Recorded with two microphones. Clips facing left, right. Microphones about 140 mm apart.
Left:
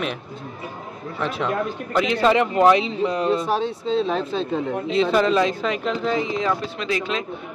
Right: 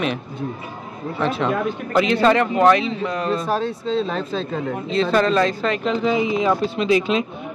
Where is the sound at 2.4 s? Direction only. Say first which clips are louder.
Right 1 dB; 15° left (ahead or behind).